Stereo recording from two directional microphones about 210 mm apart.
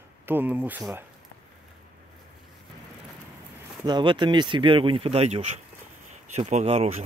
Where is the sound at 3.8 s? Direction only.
20° right (ahead or behind).